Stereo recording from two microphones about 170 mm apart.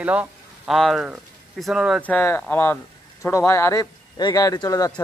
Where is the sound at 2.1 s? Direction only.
10° left (ahead or behind).